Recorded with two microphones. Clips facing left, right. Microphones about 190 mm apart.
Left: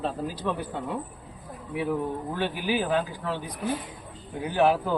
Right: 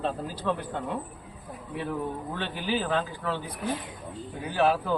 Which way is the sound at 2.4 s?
10° left (ahead or behind).